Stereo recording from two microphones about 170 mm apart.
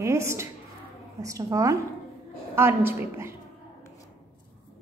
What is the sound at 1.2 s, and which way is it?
A woman's voice, 20° right (ahead or behind).